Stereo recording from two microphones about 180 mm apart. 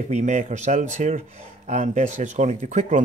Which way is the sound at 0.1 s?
40° right (ahead or behind).